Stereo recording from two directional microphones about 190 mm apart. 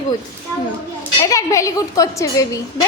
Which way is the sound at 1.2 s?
15° left (ahead or behind).